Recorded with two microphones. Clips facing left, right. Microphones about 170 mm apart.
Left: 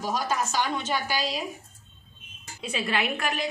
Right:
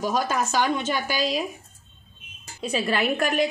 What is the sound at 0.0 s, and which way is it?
A woman's voice, 55° right (ahead or behind).